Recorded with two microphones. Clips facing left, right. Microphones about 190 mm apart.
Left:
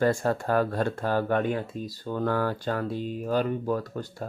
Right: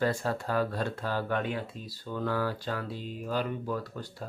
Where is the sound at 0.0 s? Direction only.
50° left (ahead or behind).